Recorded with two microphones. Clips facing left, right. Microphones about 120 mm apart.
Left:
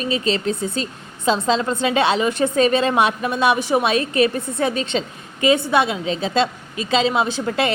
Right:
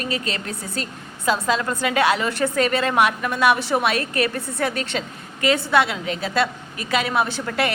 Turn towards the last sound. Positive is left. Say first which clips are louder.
# left 2 dB
turn(degrees=20)  # may be behind; listen again after turning